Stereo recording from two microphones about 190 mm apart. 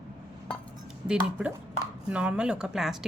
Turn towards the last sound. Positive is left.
turn(degrees=0)  # may be behind; listen again after turning